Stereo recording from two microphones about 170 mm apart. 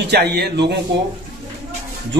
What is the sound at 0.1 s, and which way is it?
Speech, 75° right (ahead or behind).